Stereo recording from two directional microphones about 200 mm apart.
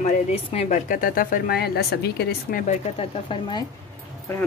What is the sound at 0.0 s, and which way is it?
A woman's voice, 35° left (ahead or behind).